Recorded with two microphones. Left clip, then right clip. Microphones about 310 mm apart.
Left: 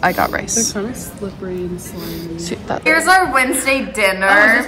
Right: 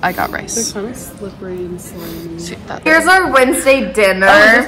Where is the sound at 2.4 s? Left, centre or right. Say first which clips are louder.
Left 3 dB; centre.